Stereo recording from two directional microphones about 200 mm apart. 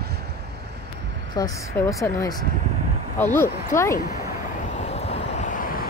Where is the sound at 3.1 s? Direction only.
10° left (ahead or behind).